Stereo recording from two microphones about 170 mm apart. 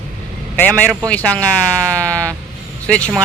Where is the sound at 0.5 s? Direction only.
10° left (ahead or behind).